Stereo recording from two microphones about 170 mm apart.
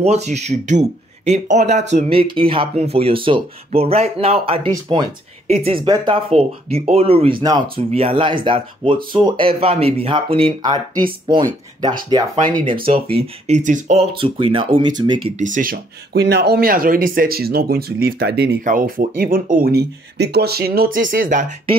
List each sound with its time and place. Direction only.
0.0 s speech: 40° right (ahead or behind)
12.8 s speech: 35° right (ahead or behind)
14.1 s speech: 30° right (ahead or behind)
15.3 s speech: 50° right (ahead or behind)